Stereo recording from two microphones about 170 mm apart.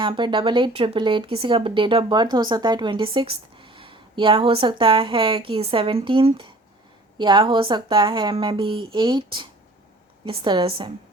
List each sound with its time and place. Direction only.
0.0 s a woman's voice: 30° right (ahead or behind)